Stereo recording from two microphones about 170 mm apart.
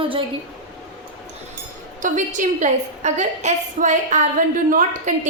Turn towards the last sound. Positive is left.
turn(degrees=-50)  # may be behind; listen again after turning